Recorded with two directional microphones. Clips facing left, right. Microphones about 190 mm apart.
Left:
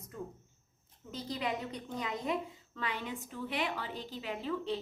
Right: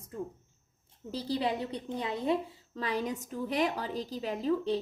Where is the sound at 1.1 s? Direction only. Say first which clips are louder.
Right 5 dB; 35° right (ahead or behind).